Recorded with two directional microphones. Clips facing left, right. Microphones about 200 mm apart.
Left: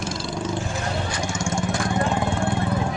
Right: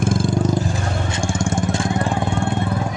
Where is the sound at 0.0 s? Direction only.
50° right (ahead or behind).